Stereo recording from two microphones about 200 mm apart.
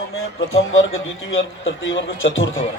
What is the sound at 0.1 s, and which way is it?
A man's voice, 90° left.